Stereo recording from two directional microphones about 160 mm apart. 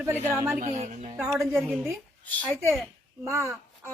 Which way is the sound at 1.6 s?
20° right (ahead or behind).